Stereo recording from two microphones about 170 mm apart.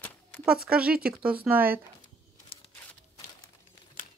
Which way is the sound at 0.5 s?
5° right (ahead or behind).